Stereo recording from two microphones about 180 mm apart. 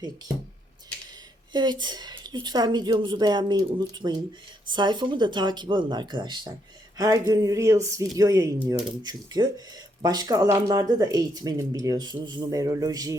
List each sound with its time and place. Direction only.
1.5 s speech: 25° right (ahead or behind)